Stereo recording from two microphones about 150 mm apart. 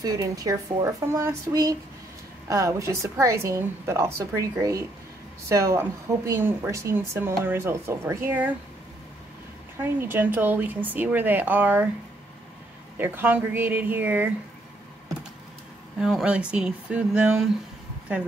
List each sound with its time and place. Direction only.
0.0 s a woman's voice: 25° right (ahead or behind)
9.8 s a woman's voice: 15° right (ahead or behind)
12.9 s a woman's voice: 15° right (ahead or behind)
16.0 s a woman's voice: centre (ahead or behind)